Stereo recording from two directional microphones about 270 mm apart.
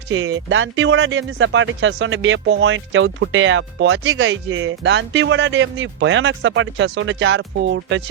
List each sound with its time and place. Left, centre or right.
0.1 s speech: right